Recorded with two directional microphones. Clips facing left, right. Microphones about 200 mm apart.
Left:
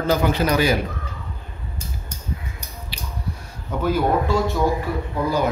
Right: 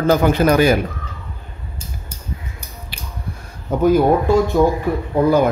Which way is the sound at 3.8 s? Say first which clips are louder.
Right 6 dB; 45° right (ahead or behind).